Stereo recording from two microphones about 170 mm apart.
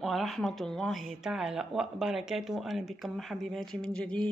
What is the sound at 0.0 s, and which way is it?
A woman's voice, centre (ahead or behind).